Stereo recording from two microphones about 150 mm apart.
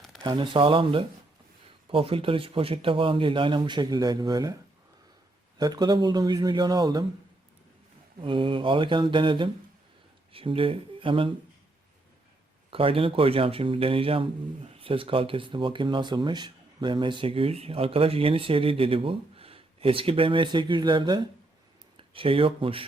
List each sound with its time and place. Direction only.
0.2 s speech: 30° right (ahead or behind)
5.5 s speech: 25° right (ahead or behind)
8.2 s speech: 35° right (ahead or behind)
12.7 s speech: 40° right (ahead or behind)